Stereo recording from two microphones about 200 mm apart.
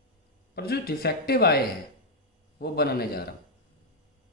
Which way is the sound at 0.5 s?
50° left (ahead or behind).